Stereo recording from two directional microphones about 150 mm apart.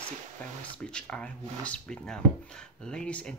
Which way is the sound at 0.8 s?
5° left (ahead or behind).